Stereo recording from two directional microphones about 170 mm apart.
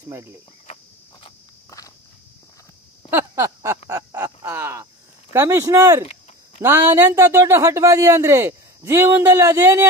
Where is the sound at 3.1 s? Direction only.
15° right (ahead or behind).